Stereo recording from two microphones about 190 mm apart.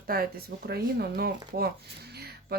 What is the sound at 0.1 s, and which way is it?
Speech, 50° right (ahead or behind).